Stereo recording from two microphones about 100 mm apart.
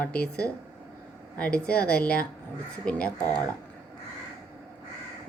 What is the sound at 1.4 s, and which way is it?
A woman's voice, 10° left (ahead or behind).